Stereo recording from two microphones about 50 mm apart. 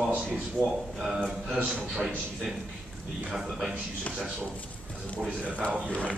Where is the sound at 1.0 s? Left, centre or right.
Centre.